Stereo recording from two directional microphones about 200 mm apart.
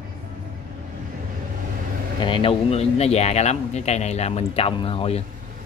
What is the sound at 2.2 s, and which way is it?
Speech, 25° left (ahead or behind).